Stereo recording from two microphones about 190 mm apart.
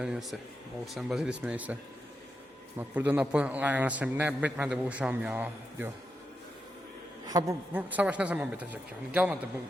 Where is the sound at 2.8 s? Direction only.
10° right (ahead or behind).